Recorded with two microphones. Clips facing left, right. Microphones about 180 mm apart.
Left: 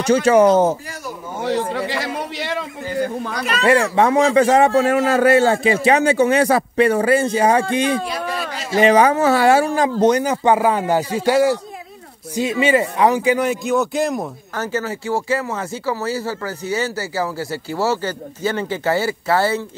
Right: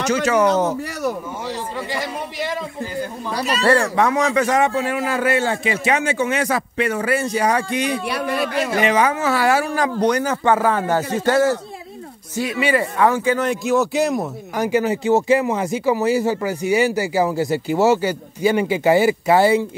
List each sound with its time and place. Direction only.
0.0 s speech: 30° left (ahead or behind)
1.4 s a man's voice: 70° left (ahead or behind)
3.6 s speech: 20° left (ahead or behind); by 4.9 s 40° left (ahead or behind)
4.9 s a man's voice: 80° left
5.2 s a man's voice: 40° left (ahead or behind)
8.0 s a man's voice: 65° right (ahead or behind)
8.7 s speech: 35° left (ahead or behind); by 11.5 s 10° left (ahead or behind)
12.4 s speech: 25° left (ahead or behind)
13.5 s speech: centre (ahead or behind)
14.5 s speech: 15° right (ahead or behind)